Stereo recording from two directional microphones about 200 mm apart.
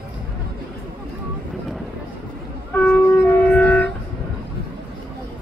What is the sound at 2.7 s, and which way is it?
Wind instrument, 10° left (ahead or behind).